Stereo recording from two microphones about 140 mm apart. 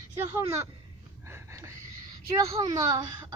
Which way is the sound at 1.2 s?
20° right (ahead or behind).